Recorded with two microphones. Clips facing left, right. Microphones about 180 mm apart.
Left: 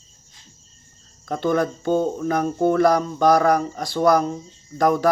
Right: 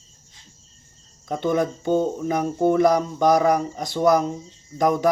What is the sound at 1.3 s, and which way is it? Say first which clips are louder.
Speech: left 1 dB; 20° right (ahead or behind).